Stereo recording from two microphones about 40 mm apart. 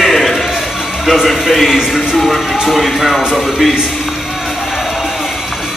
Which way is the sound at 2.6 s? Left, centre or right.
Centre.